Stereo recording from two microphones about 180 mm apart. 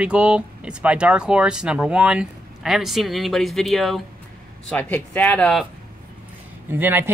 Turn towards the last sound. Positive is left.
turn(degrees=-10)  # may be behind; listen again after turning